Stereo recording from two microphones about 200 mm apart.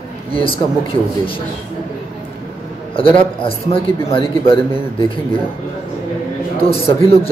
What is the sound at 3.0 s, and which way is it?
Speech, 25° left (ahead or behind).